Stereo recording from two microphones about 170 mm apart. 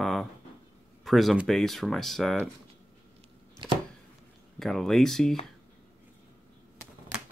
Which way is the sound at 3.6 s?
30° right (ahead or behind).